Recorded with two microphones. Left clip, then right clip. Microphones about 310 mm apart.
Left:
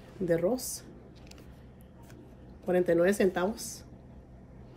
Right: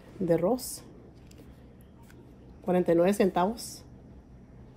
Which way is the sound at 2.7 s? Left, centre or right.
Centre.